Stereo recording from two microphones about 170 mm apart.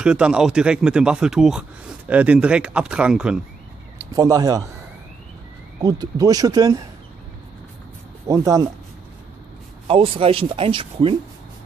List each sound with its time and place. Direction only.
0.0 s speech: 5° right (ahead or behind)
4.0 s speech: 20° right (ahead or behind)
5.8 s speech: 20° right (ahead or behind)
8.3 s speech: 20° right (ahead or behind)
9.8 s speech: 30° right (ahead or behind)